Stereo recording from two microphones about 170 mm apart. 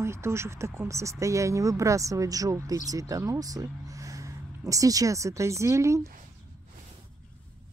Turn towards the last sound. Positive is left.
turn(degrees=-15)  # may be behind; listen again after turning